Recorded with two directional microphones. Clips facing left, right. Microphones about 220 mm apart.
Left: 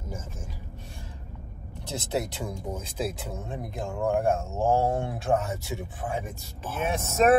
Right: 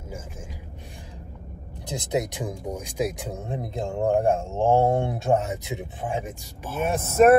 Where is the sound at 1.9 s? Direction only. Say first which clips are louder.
Right 3 dB; 15° right (ahead or behind).